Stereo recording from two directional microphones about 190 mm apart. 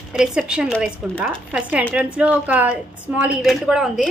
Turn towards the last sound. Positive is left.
turn(degrees=0)  # may be behind; listen again after turning